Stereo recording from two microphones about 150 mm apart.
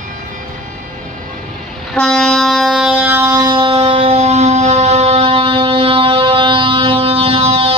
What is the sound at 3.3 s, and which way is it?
Music, 30° right (ahead or behind).